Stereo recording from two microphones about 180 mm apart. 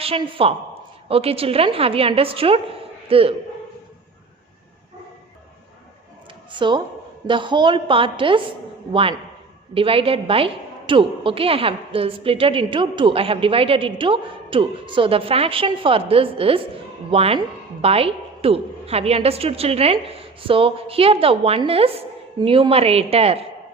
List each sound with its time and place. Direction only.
0.0 s a woman's voice: 30° right (ahead or behind)
6.6 s a woman's voice: 25° right (ahead or behind)